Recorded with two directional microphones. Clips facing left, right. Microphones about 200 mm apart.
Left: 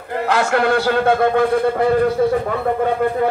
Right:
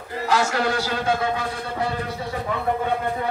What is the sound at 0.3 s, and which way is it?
A man's voice, 60° left (ahead or behind).